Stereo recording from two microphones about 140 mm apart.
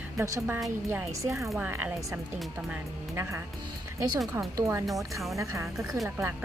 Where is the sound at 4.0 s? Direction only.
25° right (ahead or behind).